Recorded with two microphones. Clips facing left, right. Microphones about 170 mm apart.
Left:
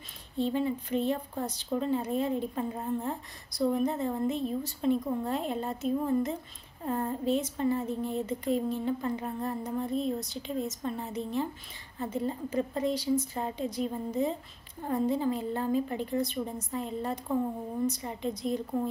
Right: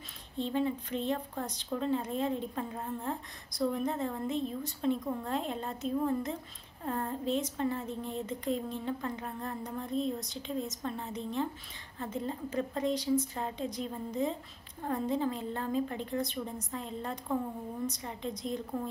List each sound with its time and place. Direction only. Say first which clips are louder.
0.4 s a woman's voice: left 3 dB; 5° left (ahead or behind)